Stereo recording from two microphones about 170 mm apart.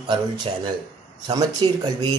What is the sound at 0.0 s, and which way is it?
A man's voice, 25° right (ahead or behind).